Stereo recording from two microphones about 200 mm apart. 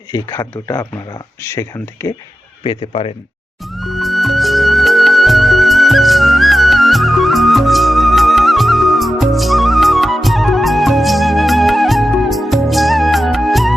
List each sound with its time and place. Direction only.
0.1 s speech: 15° left (ahead or behind)
2.6 s speech: 30° left (ahead or behind)
3.7 s music: centre (ahead or behind)